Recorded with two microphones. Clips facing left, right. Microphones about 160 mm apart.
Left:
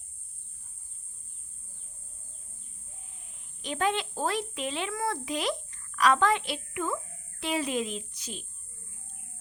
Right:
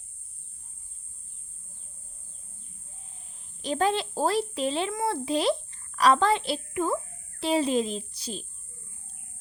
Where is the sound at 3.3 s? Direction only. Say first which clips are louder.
Right 6 dB; 35° right (ahead or behind).